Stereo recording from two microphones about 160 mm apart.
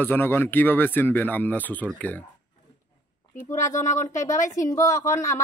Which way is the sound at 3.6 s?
50° left (ahead or behind).